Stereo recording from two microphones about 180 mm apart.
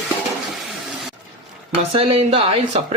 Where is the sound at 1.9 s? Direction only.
30° right (ahead or behind).